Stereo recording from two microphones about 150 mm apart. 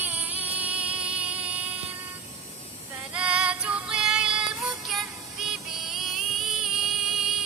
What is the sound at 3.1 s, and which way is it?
Female singing, 5° right (ahead or behind).